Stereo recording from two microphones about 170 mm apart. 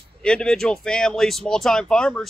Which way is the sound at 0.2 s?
5° left (ahead or behind).